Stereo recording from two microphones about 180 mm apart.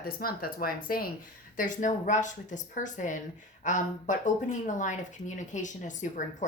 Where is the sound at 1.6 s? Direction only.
45° left (ahead or behind).